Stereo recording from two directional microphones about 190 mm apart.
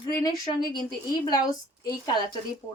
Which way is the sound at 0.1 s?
15° left (ahead or behind).